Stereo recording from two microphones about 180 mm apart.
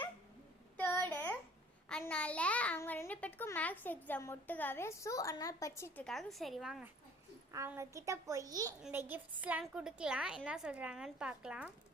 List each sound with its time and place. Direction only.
1.0 s a sound: 10° left (ahead or behind)
6.1 s a woman's voice: centre (ahead or behind)
7.5 s a child's voice: 15° right (ahead or behind)